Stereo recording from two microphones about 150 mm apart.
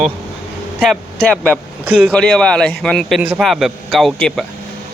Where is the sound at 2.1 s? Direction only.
5° left (ahead or behind).